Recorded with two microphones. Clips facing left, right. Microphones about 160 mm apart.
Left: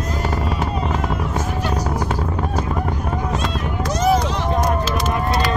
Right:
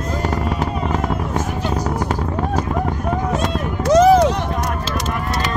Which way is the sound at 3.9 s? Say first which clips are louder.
Right 8 dB; 90° right.